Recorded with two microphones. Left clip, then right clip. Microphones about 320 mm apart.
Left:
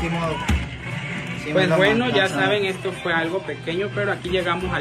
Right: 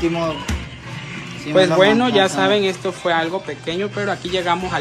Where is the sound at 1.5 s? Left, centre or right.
Centre.